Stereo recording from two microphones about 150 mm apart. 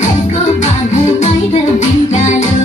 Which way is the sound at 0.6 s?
50° left (ahead or behind).